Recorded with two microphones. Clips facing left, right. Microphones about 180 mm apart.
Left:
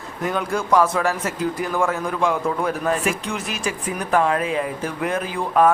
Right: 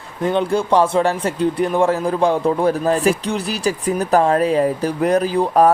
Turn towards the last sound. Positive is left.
turn(degrees=-40)  # may be behind; listen again after turning